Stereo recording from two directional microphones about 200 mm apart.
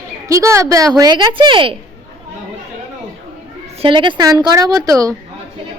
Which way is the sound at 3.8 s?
25° right (ahead or behind).